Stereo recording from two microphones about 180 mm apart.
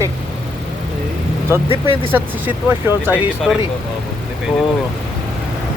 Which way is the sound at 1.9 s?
10° right (ahead or behind).